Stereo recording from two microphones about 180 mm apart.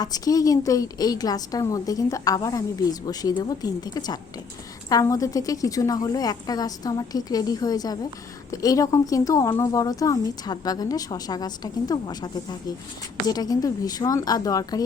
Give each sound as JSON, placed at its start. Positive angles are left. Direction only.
{"t": 0.0, "sound": "a woman's voice", "side_deg": 20}